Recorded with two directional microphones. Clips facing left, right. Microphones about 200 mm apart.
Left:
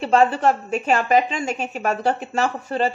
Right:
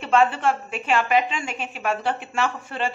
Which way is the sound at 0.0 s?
35° left (ahead or behind).